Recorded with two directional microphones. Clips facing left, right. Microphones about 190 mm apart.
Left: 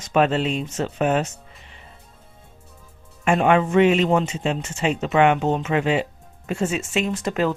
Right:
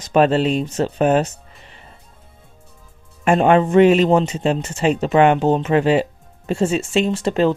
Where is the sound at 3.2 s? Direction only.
35° right (ahead or behind).